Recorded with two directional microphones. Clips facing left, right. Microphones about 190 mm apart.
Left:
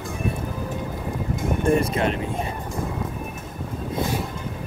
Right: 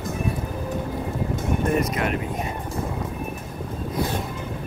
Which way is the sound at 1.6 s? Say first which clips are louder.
Left 4 dB; 30° left (ahead or behind).